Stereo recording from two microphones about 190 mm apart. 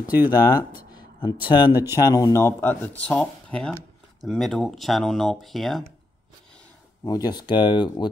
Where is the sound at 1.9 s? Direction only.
15° left (ahead or behind); by 5.8 s centre (ahead or behind).